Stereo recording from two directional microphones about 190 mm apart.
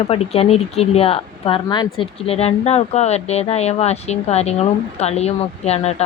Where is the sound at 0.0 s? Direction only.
30° left (ahead or behind).